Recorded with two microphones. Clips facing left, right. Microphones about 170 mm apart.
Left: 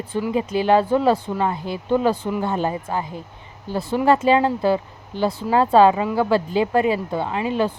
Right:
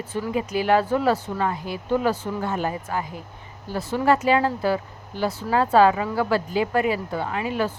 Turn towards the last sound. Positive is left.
turn(degrees=25)  # may be behind; listen again after turning